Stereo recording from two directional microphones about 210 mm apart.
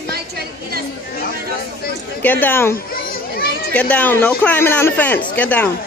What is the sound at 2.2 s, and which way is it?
Speech, 10° left (ahead or behind).